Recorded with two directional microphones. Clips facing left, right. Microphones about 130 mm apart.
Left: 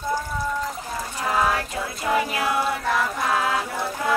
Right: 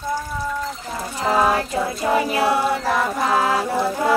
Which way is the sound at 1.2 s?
25° right (ahead or behind).